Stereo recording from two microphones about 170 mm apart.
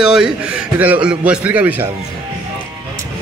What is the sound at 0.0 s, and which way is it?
A man's voice, 5° right (ahead or behind).